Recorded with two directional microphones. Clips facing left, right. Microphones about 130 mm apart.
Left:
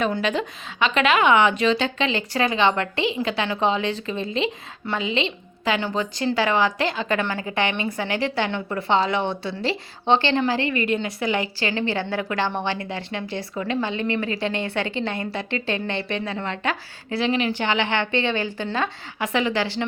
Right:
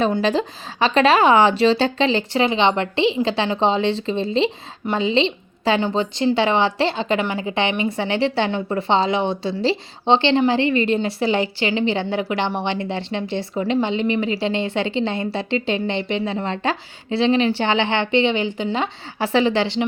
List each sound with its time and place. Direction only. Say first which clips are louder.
0.0 s a woman's voice: right 4 dB; 30° right (ahead or behind)
7.2 s a woman's voice: right 3 dB; 15° right (ahead or behind)
19.2 s a woman's voice: right 5 dB; 30° right (ahead or behind)